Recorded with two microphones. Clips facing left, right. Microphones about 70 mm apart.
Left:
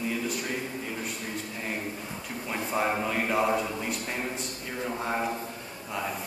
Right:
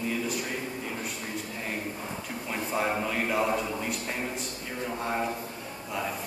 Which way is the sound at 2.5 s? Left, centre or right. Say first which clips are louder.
Left 1 dB; centre.